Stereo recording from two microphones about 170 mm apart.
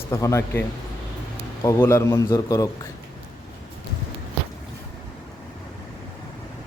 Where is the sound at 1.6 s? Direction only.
15° left (ahead or behind).